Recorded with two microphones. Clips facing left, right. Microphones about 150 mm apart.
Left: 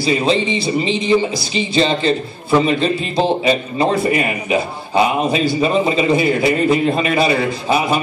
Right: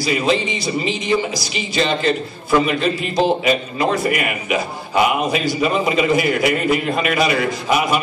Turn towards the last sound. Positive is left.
turn(degrees=30)  # may be behind; listen again after turning